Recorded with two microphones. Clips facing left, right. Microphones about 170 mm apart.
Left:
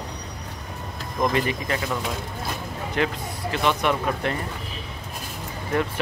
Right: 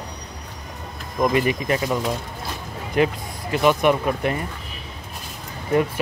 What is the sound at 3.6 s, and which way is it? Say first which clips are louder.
Speech: right 5 dB; 10° right (ahead or behind).